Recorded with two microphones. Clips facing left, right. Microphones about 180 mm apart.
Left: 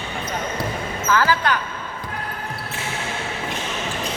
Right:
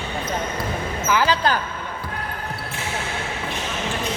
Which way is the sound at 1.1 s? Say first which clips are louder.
Even; 20° right (ahead or behind).